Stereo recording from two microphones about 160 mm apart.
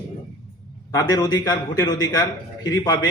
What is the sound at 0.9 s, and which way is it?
A man's voice, 25° left (ahead or behind).